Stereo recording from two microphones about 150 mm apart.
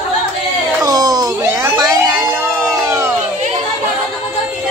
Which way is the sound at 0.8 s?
25° right (ahead or behind).